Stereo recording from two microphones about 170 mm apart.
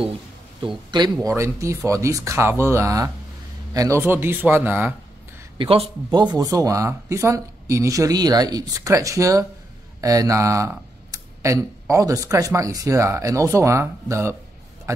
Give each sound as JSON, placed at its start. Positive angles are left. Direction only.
{"t": 0.6, "sound": "speech", "side_deg": -25}
{"t": 1.2, "sound": "speech", "side_deg": -15}
{"t": 5.6, "sound": "a man's voice", "side_deg": -35}
{"t": 6.0, "sound": "a man's voice", "side_deg": -25}